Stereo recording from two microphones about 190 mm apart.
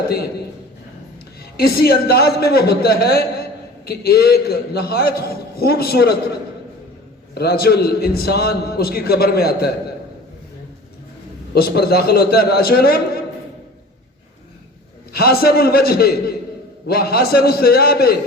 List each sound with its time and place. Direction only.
1.4 s a man's voice: 55° left (ahead or behind)
7.3 s a man's voice: 55° left (ahead or behind)
11.5 s a man's voice: 55° left (ahead or behind)
15.1 s a man's voice: 55° left (ahead or behind)